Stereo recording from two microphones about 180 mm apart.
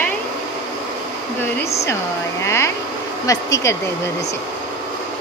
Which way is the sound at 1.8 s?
15° left (ahead or behind).